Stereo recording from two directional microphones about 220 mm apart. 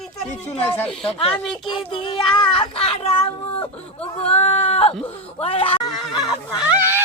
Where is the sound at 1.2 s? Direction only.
25° left (ahead or behind).